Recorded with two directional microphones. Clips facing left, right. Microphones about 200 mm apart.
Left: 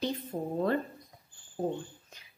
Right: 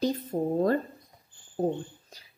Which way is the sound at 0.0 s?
40° right (ahead or behind).